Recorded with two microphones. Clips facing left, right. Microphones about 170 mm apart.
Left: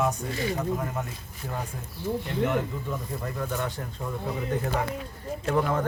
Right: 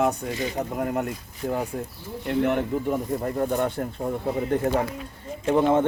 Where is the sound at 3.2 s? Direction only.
40° right (ahead or behind).